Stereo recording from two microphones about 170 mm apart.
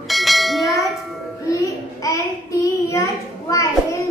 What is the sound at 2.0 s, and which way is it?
Child singing, 20° left (ahead or behind).